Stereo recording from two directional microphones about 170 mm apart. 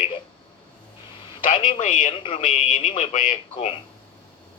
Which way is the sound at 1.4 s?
45° left (ahead or behind).